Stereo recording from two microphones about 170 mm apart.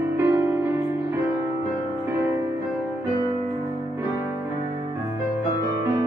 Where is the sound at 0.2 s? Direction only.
15° right (ahead or behind).